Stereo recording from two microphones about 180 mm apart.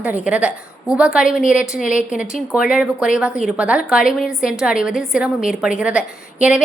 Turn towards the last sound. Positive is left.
turn(degrees=-5)  # may be behind; listen again after turning